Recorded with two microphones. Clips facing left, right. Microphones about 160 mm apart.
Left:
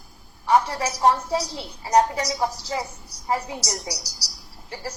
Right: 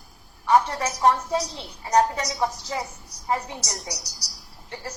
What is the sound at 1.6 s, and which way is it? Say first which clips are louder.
A woman's voice: left 2 dB; 30° left (ahead or behind).